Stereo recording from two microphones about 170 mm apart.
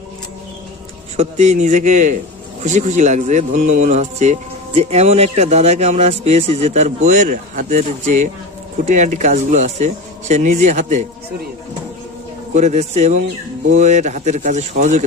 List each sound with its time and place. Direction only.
1.1 s a man's voice: 40° right (ahead or behind)
12.5 s a man's voice: 40° right (ahead or behind)